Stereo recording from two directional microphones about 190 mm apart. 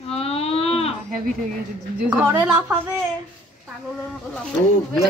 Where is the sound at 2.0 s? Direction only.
10° right (ahead or behind).